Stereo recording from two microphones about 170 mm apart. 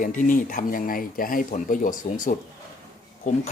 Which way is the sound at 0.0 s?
50° left (ahead or behind).